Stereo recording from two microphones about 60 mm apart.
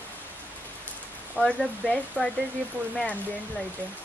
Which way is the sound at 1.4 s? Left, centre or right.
Left.